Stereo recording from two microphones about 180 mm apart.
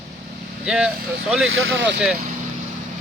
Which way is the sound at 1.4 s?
90° right.